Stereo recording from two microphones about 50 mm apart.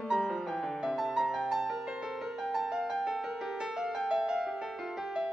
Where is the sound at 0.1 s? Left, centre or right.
Centre.